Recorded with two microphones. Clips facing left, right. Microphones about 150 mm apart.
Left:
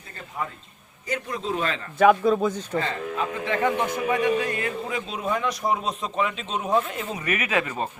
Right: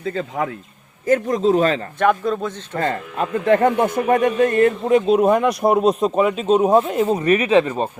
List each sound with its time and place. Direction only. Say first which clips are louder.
0.0 s a man's voice: right 11 dB; 90° right
1.0 s a man's voice: right 13 dB; 45° right (ahead or behind)
2.0 s a man's voice: left 3 dB; 5° left (ahead or behind)
2.7 s speech: right 4 dB; 50° right (ahead or behind); by 7.9 s 25° right (ahead or behind)